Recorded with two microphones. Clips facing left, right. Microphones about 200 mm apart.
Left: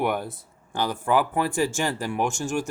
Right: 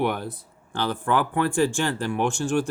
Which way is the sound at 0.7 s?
10° left (ahead or behind).